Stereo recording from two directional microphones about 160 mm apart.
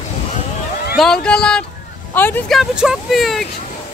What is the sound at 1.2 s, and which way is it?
Speech, 5° left (ahead or behind).